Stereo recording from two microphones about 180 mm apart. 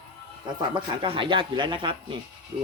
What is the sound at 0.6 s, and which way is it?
Speech, 25° right (ahead or behind).